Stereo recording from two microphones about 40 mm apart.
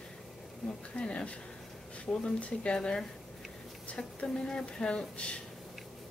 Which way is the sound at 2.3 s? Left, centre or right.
Left.